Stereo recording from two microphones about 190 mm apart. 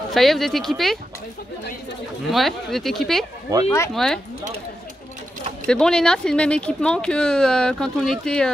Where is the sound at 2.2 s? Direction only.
Centre (ahead or behind).